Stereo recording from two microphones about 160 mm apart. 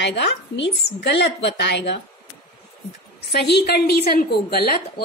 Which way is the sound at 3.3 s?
90° left.